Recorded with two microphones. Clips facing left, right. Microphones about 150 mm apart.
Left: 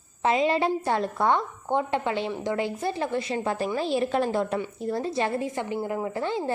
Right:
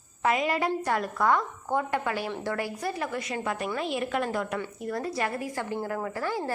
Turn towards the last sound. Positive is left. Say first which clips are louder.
# left 3 dB
turn(degrees=20)  # may be behind; listen again after turning